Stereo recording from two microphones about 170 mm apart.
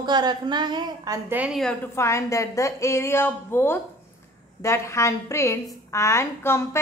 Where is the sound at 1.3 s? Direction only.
5° right (ahead or behind).